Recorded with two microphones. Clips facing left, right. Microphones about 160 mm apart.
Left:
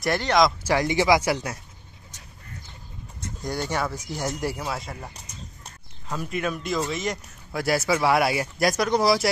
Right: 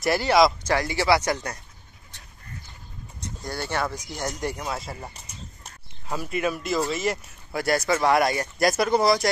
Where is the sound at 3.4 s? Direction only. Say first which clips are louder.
Left 1 dB; 15° left (ahead or behind).